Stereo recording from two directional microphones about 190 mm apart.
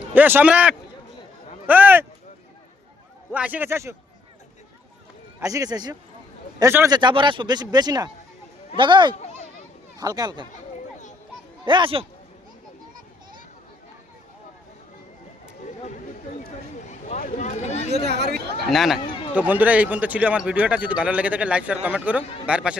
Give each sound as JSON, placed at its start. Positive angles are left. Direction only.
{"t": 0.1, "sound": "a man's voice", "side_deg": -10}
{"t": 3.3, "sound": "a man's voice", "side_deg": -10}
{"t": 5.4, "sound": "speech", "side_deg": -15}
{"t": 9.1, "sound": "children playing", "side_deg": 35}
{"t": 10.0, "sound": "speech", "side_deg": -20}
{"t": 11.6, "sound": "speech", "side_deg": -25}
{"t": 16.9, "sound": "a sound", "side_deg": 40}
{"t": 18.0, "sound": "chatter", "side_deg": -60}
{"t": 18.7, "sound": "a man's voice", "side_deg": 0}
{"t": 22.2, "sound": "speech", "side_deg": 30}
{"t": 22.4, "sound": "speech", "side_deg": -5}